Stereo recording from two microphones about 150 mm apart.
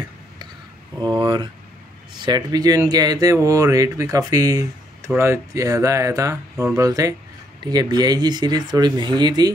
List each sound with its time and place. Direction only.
0.9 s speech: 30° right (ahead or behind)